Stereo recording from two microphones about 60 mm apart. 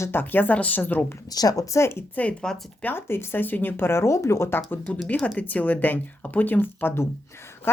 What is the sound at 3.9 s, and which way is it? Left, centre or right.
Speech, left.